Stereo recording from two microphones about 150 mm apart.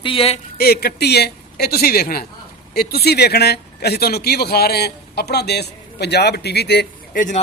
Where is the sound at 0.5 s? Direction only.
90° left; by 7.4 s 60° left (ahead or behind).